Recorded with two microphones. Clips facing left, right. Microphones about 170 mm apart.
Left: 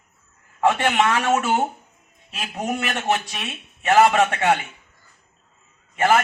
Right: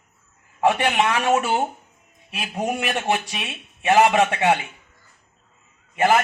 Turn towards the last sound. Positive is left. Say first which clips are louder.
# even
turn(degrees=-15)  # may be behind; listen again after turning